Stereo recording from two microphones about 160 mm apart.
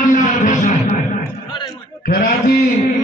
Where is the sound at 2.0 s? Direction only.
65° left (ahead or behind).